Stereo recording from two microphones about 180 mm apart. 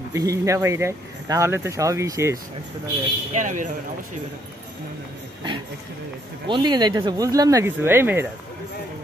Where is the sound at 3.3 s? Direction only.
45° right (ahead or behind).